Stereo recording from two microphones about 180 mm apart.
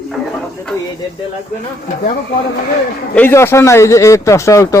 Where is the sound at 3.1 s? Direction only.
10° left (ahead or behind).